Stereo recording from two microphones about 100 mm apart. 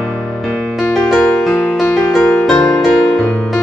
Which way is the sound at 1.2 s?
20° left (ahead or behind).